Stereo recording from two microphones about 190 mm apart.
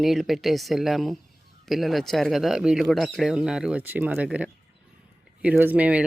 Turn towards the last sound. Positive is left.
turn(degrees=-5)  # may be behind; listen again after turning